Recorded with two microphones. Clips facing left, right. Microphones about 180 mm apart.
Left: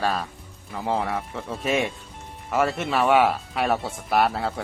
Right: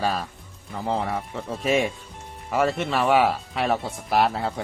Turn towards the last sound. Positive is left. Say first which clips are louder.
# even
turn(degrees=0)  # may be behind; listen again after turning